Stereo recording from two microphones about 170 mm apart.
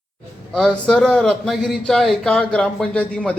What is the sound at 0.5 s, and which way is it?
A man's voice, centre (ahead or behind).